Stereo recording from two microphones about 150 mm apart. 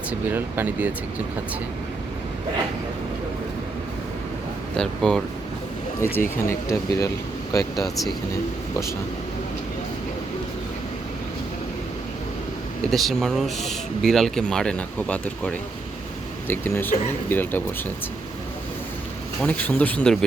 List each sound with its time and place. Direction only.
0.1 s speech: 15° right (ahead or behind)
4.8 s speech: 5° left (ahead or behind)
6.0 s speech: 15° left (ahead or behind)
7.9 s speech: centre (ahead or behind)
12.9 s speech: centre (ahead or behind)
19.4 s speech: 10° left (ahead or behind)